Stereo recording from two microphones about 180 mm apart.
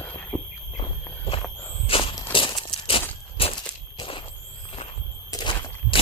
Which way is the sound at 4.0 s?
25° left (ahead or behind).